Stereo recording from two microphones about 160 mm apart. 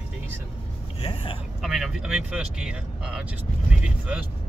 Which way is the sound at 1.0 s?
35° left (ahead or behind).